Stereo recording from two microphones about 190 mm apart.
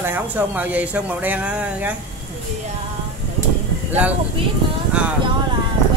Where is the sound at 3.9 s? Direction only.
10° right (ahead or behind).